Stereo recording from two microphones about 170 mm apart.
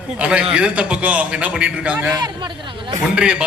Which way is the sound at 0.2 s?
5° right (ahead or behind).